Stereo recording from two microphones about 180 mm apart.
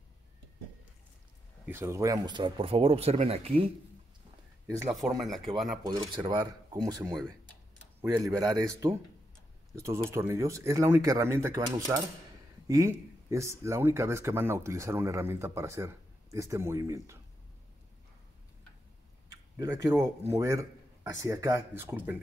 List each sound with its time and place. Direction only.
1.7 s speech: 15° right (ahead or behind); by 3.5 s 35° right (ahead or behind)
4.9 s speech: centre (ahead or behind)
5.9 s speech: 25° right (ahead or behind)
10.0 s speech: 15° right (ahead or behind)
19.5 s speech: 15° right (ahead or behind)